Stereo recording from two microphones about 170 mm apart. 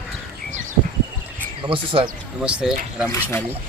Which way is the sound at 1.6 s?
30° right (ahead or behind).